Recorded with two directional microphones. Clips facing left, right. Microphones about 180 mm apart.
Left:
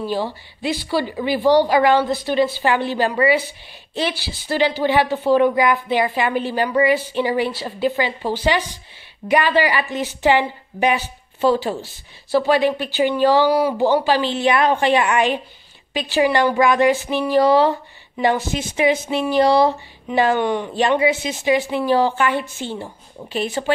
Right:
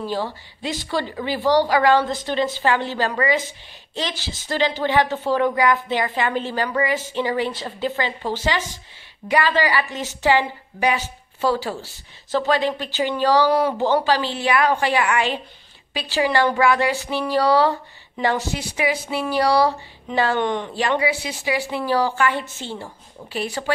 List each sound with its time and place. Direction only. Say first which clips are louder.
0.0 s a woman's voice: left 3 dB; 15° left (ahead or behind)
21.0 s a woman's voice: left 4 dB; 20° left (ahead or behind)